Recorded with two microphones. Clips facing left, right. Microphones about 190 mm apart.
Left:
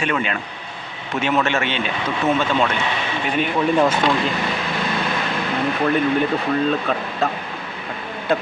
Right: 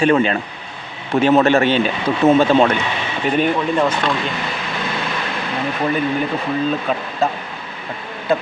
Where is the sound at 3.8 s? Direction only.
5° left (ahead or behind).